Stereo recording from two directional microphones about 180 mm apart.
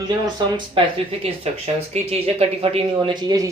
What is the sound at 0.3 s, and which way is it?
Speech, 25° right (ahead or behind).